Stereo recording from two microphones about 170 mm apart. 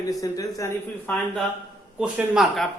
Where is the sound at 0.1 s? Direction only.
20° left (ahead or behind).